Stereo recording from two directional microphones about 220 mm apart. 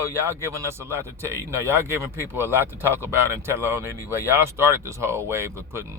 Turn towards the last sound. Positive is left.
turn(degrees=-10)  # may be behind; listen again after turning